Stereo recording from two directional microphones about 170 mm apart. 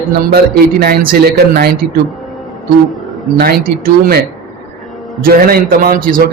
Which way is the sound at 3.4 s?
60° right (ahead or behind).